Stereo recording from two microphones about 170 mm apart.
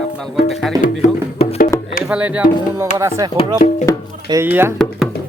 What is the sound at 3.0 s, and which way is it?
Speech, 20° right (ahead or behind).